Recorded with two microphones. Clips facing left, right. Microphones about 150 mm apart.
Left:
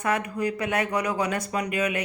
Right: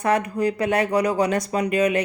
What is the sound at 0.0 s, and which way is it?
Speech, 35° right (ahead or behind).